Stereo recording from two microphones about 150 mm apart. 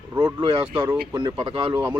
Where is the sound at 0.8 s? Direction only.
25° right (ahead or behind).